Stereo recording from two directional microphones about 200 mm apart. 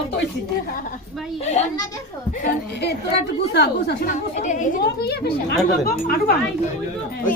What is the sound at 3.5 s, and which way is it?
Speech, 55° left (ahead or behind).